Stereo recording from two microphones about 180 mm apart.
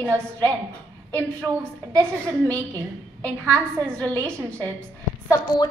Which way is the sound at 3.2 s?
5° left (ahead or behind).